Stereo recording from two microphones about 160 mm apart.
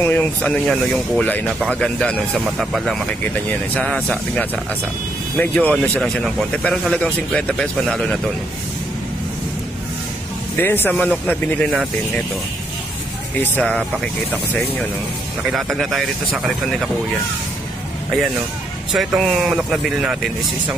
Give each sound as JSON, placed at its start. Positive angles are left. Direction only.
{"t": 0.0, "sound": "speech", "side_deg": 10}
{"t": 10.6, "sound": "speech", "side_deg": 15}
{"t": 13.4, "sound": "speech", "side_deg": 5}
{"t": 18.9, "sound": "speech", "side_deg": 0}